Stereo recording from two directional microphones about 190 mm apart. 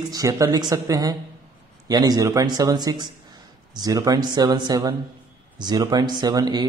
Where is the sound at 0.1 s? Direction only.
20° right (ahead or behind).